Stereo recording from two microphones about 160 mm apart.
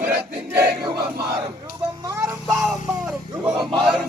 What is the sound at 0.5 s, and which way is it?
Battle cry, 80° right.